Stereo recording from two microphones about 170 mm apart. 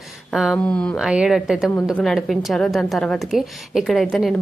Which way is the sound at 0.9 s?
5° right (ahead or behind).